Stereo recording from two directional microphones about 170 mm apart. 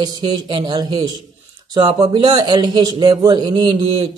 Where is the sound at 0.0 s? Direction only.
25° right (ahead or behind).